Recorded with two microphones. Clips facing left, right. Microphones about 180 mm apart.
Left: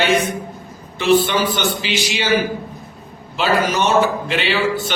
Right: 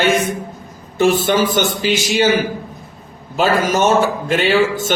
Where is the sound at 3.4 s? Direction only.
45° right (ahead or behind).